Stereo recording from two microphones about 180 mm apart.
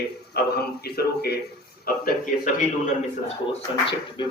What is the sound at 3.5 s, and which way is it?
Speech, 30° left (ahead or behind).